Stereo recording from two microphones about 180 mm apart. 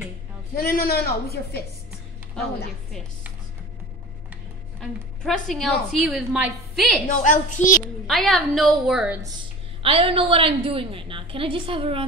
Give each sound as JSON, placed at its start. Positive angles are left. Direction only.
{"t": 0.6, "sound": "a woman's voice", "side_deg": 55}
{"t": 4.7, "sound": "a woman's voice", "side_deg": 5}
{"t": 7.2, "sound": "a child's voice", "side_deg": 45}
{"t": 8.1, "sound": "a woman's voice", "side_deg": 0}
{"t": 9.8, "sound": "a woman's voice", "side_deg": -30}